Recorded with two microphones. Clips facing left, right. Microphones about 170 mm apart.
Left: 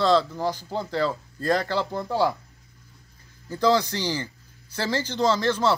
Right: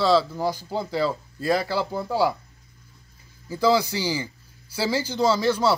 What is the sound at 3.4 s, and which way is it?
Speech, 10° right (ahead or behind).